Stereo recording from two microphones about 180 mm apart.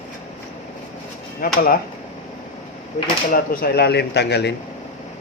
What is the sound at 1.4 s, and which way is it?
Speech, 55° left (ahead or behind).